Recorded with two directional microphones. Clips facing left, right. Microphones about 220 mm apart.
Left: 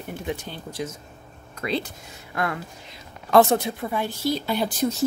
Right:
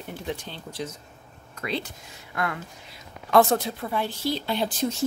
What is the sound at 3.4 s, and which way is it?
Speech, 15° left (ahead or behind).